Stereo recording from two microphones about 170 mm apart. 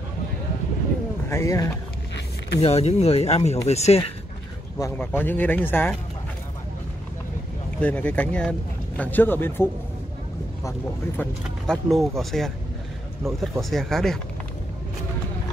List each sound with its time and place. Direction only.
1.3 s speech: 20° left (ahead or behind)
2.6 s speech: 35° left (ahead or behind)
4.9 s speech: 10° left (ahead or behind)
7.8 s speech: 10° left (ahead or behind)
11.1 s speech: 5° left (ahead or behind)